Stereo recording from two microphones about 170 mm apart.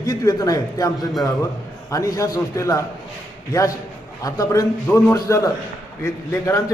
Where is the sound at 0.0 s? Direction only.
20° left (ahead or behind).